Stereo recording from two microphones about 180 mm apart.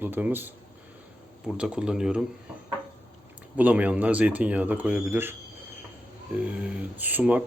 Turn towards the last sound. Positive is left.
turn(degrees=-10)  # may be behind; listen again after turning